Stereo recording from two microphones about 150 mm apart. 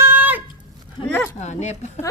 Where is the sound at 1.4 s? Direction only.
50° left (ahead or behind).